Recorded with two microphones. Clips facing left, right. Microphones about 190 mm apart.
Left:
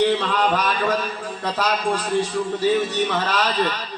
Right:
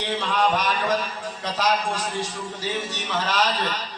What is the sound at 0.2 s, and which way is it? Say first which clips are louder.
A man's voice: left 2 dB; 60° left (ahead or behind).